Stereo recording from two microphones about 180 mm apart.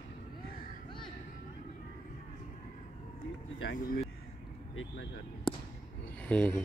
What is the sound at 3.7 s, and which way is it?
Speech, 50° left (ahead or behind).